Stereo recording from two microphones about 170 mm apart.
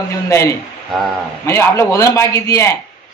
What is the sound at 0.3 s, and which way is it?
Speech, 15° left (ahead or behind).